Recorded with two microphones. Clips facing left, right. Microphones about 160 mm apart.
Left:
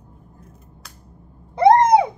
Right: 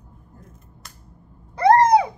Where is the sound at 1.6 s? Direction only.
20° left (ahead or behind).